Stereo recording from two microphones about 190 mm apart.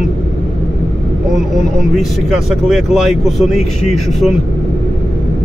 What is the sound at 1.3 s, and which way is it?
Speech, centre (ahead or behind).